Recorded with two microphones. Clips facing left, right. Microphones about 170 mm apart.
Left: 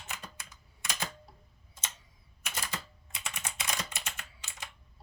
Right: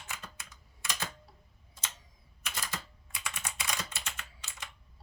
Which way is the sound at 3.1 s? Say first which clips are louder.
Even; 20° left (ahead or behind).